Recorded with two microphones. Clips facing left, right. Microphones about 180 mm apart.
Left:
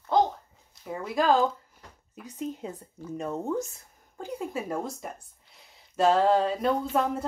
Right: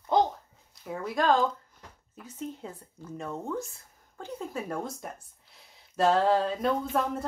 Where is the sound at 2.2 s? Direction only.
15° left (ahead or behind).